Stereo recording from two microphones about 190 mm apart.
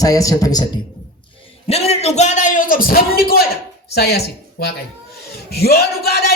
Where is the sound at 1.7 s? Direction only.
35° left (ahead or behind); by 4.2 s 55° left (ahead or behind).